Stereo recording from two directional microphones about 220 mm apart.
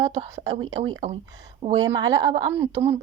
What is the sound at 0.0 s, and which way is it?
A woman's voice, 15° right (ahead or behind).